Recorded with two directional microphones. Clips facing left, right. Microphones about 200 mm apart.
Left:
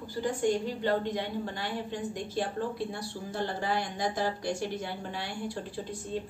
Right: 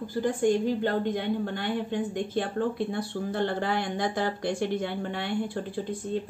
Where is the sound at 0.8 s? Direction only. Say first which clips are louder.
Right 3 dB; 55° right (ahead or behind).